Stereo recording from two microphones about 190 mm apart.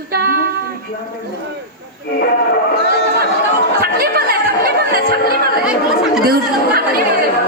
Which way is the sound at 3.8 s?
50° right (ahead or behind).